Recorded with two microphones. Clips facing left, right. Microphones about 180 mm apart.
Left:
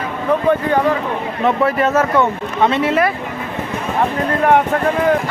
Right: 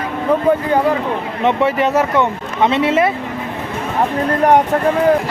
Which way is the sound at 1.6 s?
15° right (ahead or behind).